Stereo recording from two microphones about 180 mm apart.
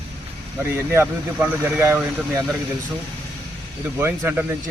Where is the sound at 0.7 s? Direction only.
10° right (ahead or behind).